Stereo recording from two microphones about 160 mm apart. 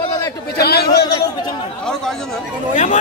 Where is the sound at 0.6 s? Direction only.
80° left.